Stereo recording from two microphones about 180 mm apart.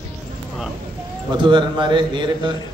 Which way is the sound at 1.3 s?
25° right (ahead or behind).